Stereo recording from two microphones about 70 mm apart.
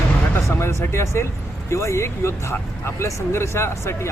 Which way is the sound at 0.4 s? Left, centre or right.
Left.